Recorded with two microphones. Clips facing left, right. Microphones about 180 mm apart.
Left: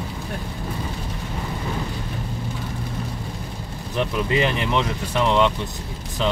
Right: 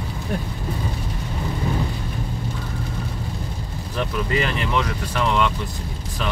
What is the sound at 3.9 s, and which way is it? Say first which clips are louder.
Speech: left 2 dB; 20° left (ahead or behind).